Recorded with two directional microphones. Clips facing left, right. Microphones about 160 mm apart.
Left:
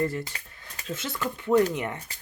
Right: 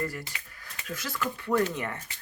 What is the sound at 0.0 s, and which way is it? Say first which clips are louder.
Speech: left 6 dB; 25° left (ahead or behind).